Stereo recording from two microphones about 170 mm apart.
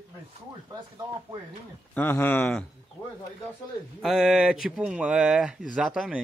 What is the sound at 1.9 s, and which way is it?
Speech, 10° left (ahead or behind).